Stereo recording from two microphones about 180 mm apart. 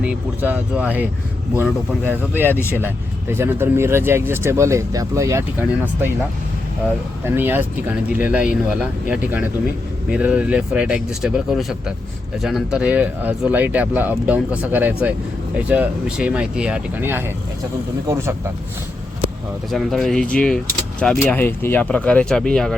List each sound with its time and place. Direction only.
0.0 s speech: 5° right (ahead or behind)
7.3 s speech: 10° right (ahead or behind)
19.7 s speech: centre (ahead or behind)